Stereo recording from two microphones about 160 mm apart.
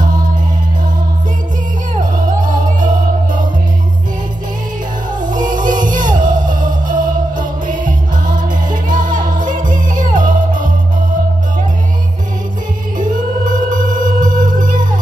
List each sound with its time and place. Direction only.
2.0 s music: 55° right (ahead or behind)
5.2 s music: 55° right (ahead or behind)
13.1 s music: 55° right (ahead or behind)